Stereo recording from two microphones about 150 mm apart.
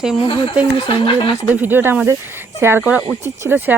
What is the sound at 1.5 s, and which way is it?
Speech, 10° right (ahead or behind).